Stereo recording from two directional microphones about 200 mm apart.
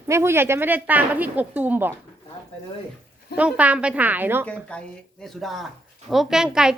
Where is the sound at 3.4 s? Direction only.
5° right (ahead or behind).